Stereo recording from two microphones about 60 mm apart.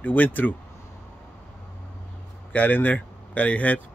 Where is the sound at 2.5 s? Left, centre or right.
Left.